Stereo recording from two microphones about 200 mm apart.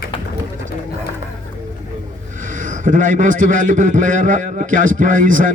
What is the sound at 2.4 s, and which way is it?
A man's voice, 40° right (ahead or behind).